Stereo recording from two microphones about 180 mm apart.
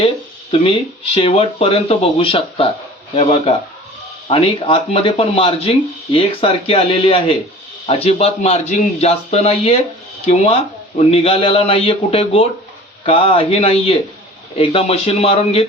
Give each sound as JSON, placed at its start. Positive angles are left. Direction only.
{"t": 0.6, "sound": "a man's voice", "side_deg": 30}